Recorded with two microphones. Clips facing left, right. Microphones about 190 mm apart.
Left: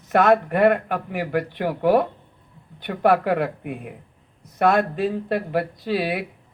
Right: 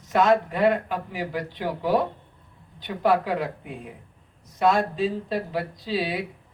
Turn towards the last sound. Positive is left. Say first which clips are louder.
# left 3 dB
turn(degrees=60)  # may be behind; listen again after turning